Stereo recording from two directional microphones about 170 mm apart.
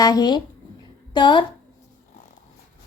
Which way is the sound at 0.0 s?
20° left (ahead or behind).